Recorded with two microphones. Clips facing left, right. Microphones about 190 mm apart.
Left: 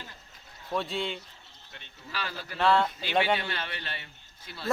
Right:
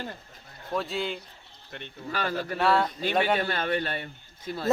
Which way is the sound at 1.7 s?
55° right (ahead or behind).